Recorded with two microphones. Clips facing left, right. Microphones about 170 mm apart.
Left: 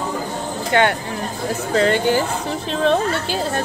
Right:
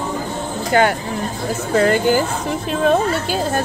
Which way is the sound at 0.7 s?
35° right (ahead or behind).